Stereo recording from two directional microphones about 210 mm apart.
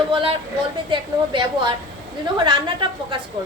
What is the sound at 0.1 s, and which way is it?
A woman's voice, 25° right (ahead or behind).